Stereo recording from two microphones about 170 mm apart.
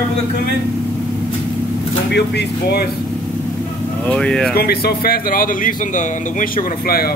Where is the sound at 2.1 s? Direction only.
80° left.